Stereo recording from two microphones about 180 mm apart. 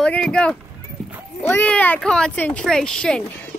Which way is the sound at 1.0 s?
Centre (ahead or behind).